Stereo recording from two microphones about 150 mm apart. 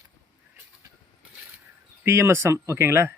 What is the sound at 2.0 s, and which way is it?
Speech, 15° right (ahead or behind).